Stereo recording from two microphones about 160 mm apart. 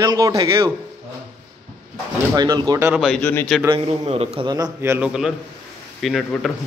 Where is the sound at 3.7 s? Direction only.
40° right (ahead or behind); by 5.1 s 15° right (ahead or behind).